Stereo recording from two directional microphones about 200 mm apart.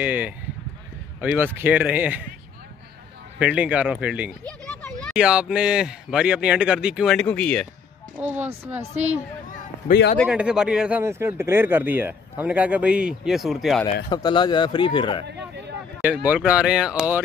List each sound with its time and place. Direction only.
0.0 s speech: 10° right (ahead or behind)
3.3 s speech: 5° right (ahead or behind)
4.5 s speech: 5° left (ahead or behind)
8.5 s speech: 10° right (ahead or behind)
10.2 s speech: 5° right (ahead or behind)
14.0 s speech: 20° left (ahead or behind)
15.2 s speech: 60° right (ahead or behind)
16.0 s speech: 5° right (ahead or behind)